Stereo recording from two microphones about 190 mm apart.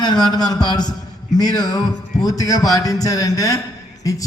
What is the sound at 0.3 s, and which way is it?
Speech, 20° left (ahead or behind).